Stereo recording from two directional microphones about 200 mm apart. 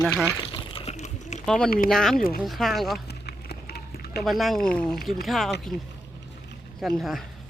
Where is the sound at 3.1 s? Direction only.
50° left (ahead or behind).